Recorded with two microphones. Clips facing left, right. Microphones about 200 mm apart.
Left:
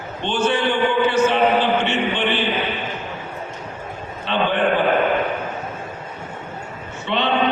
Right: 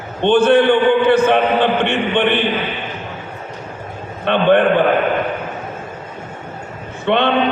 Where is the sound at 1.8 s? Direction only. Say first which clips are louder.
Right 5 dB; 55° right (ahead or behind).